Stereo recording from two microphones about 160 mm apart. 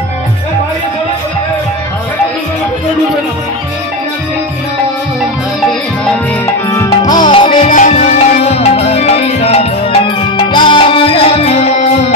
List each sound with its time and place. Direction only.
6.4 s music: 20° left (ahead or behind)
7.4 s music: 50° left (ahead or behind)